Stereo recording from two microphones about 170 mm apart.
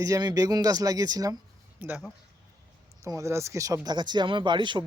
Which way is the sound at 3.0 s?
15° right (ahead or behind).